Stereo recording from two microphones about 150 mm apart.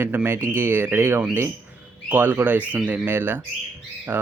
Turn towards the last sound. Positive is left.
turn(degrees=-10)  # may be behind; listen again after turning